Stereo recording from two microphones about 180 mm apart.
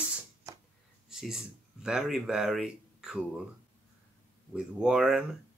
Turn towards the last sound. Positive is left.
turn(degrees=-5)  # may be behind; listen again after turning